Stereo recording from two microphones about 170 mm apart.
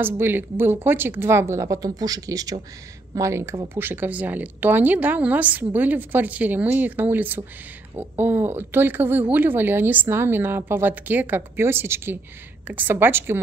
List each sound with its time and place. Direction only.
0.0 s speech: 10° right (ahead or behind)